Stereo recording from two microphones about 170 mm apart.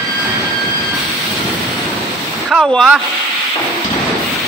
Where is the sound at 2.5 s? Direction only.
5° right (ahead or behind).